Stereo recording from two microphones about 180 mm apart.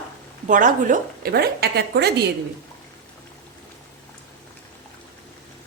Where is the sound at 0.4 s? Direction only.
45° right (ahead or behind); by 2.1 s 65° right (ahead or behind).